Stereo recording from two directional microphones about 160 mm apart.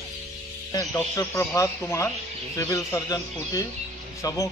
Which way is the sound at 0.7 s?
20° left (ahead or behind).